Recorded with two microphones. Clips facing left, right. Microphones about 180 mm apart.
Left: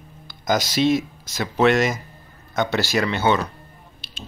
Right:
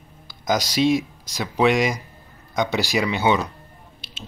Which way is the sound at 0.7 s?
10° right (ahead or behind).